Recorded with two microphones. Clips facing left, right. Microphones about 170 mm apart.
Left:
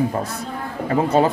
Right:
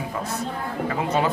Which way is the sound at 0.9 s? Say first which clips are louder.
Left 7 dB; 30° left (ahead or behind).